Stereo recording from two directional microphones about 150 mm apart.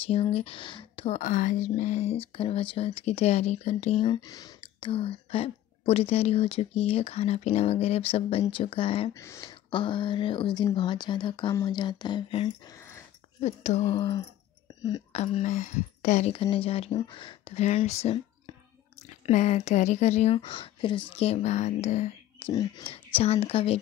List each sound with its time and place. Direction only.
0.0 s speech: 40° left (ahead or behind)
4.1 s speech: 25° left (ahead or behind)
4.6 s a woman's voice: 35° left (ahead or behind)
9.1 s speech: 20° left (ahead or behind)
9.5 s a woman's voice: 35° left (ahead or behind)
12.6 s a sound: 20° left (ahead or behind)
13.4 s speech: 50° left (ahead or behind)
13.8 s a woman's voice: 30° left (ahead or behind)
15.1 s a woman's voice: 45° left (ahead or behind)
17.6 s speech: 45° left (ahead or behind)
22.5 s speech: 25° left (ahead or behind)
23.1 s a woman's voice: 45° left (ahead or behind)